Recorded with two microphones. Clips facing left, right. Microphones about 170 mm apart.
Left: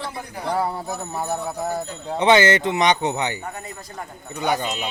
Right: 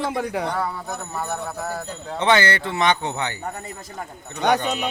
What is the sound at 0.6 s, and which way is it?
Speech, 30° left (ahead or behind).